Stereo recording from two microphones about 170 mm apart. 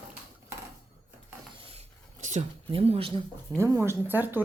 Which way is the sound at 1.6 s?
35° right (ahead or behind).